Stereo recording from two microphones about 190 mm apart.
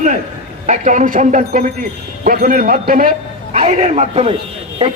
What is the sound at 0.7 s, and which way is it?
A man's voice, 40° right (ahead or behind).